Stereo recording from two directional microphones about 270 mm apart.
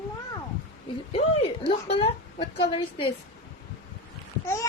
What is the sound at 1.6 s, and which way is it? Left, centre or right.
A child's voice, left.